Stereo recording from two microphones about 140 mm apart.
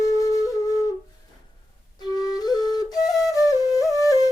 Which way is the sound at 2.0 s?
30° left (ahead or behind).